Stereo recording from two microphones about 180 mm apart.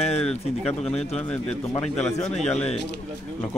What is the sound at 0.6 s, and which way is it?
Speech, 35° left (ahead or behind).